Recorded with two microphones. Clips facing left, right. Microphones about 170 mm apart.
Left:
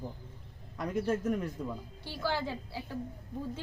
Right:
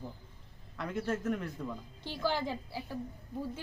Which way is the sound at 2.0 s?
15° right (ahead or behind).